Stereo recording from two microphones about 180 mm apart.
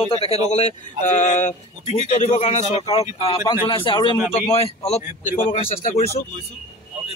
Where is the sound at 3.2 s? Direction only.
30° left (ahead or behind).